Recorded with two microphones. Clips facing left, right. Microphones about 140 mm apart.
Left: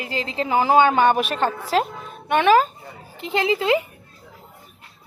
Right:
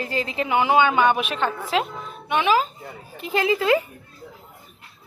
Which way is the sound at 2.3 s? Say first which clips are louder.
Left 4 dB; 50° left (ahead or behind).